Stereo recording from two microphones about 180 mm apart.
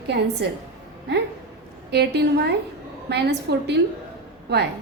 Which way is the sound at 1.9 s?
65° right (ahead or behind).